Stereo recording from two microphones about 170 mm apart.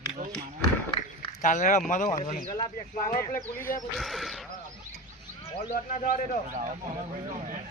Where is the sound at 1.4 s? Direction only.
45° left (ahead or behind).